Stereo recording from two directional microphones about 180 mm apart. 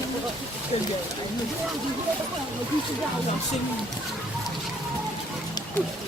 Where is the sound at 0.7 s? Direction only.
35° left (ahead or behind).